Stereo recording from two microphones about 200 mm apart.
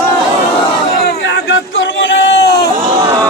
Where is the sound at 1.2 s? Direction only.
70° left (ahead or behind).